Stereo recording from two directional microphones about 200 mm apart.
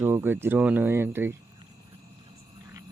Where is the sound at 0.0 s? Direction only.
10° right (ahead or behind).